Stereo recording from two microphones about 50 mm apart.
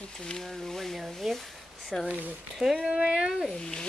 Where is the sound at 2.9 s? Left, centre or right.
Centre.